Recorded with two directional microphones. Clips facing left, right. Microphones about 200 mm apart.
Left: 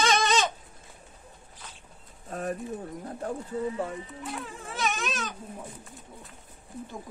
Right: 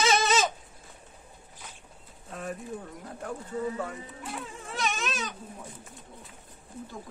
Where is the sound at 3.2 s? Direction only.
30° left (ahead or behind).